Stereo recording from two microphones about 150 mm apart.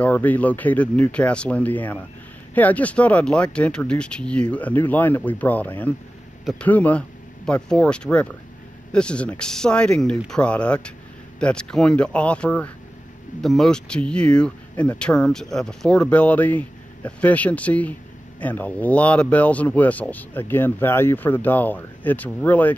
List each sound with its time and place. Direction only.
0.0 s speech: 10° left (ahead or behind)